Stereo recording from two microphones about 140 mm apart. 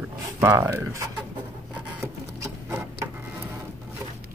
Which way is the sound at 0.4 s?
20° right (ahead or behind).